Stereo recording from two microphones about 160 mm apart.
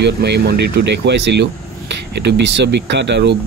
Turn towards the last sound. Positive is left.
turn(degrees=-90)